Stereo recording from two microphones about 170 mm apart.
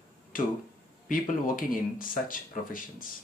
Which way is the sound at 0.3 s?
55° left (ahead or behind).